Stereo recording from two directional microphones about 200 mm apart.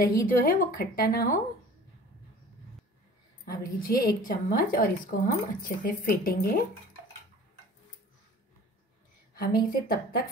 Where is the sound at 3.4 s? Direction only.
50° left (ahead or behind).